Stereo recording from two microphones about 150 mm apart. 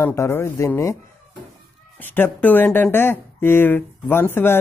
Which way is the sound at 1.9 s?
15° left (ahead or behind).